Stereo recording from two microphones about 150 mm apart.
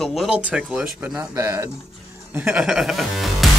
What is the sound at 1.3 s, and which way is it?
Speech, 20° right (ahead or behind).